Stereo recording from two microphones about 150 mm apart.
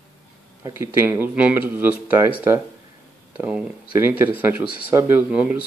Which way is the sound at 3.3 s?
10° right (ahead or behind).